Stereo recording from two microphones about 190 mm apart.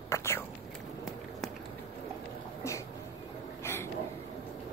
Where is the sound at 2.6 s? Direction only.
15° left (ahead or behind).